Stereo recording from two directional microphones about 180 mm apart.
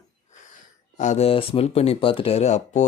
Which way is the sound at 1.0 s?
40° left (ahead or behind).